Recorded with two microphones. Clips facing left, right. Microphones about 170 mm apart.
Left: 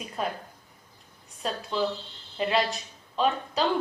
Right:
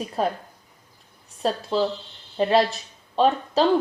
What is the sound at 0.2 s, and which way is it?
Speech, 35° right (ahead or behind).